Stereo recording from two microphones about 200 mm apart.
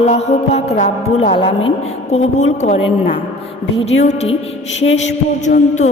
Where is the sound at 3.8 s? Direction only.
30° left (ahead or behind).